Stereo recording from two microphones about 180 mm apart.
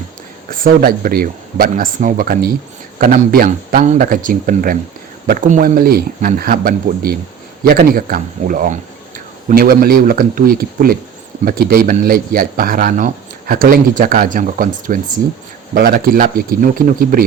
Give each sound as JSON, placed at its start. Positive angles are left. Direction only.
{"t": 0.5, "sound": "speech", "side_deg": -50}